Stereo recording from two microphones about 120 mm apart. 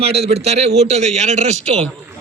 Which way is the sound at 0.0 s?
55° right (ahead or behind).